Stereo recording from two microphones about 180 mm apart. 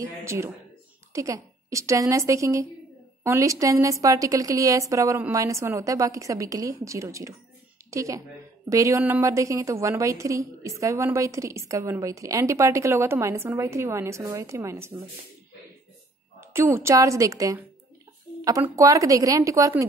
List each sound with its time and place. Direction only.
0.2 s a woman's voice: 15° right (ahead or behind)
16.3 s a woman's voice: 15° right (ahead or behind)